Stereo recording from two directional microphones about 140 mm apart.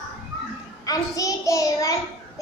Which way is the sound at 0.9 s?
25° left (ahead or behind).